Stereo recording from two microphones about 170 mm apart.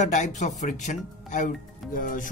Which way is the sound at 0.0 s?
45° left (ahead or behind).